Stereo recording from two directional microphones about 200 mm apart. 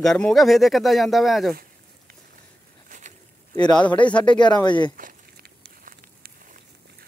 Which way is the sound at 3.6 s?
5° left (ahead or behind).